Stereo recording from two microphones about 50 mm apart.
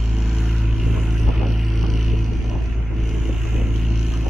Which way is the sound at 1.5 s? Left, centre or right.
Centre.